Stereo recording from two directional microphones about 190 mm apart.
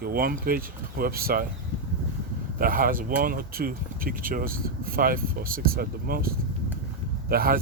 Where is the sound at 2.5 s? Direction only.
50° right (ahead or behind).